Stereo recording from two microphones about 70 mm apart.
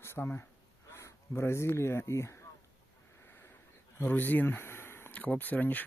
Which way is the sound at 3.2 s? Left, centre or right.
Left.